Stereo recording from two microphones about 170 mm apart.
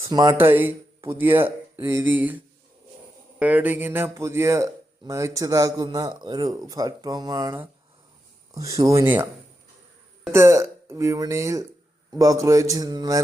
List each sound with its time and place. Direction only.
0.0 s speech: 20° right (ahead or behind)
10.3 s speech: 15° right (ahead or behind)